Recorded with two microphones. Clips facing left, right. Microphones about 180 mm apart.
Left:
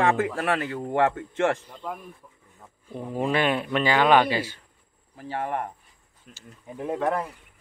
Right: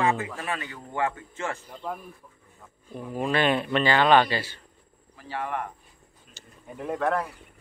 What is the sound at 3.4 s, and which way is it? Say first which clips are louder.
Speech: right 2 dB; 10° left (ahead or behind).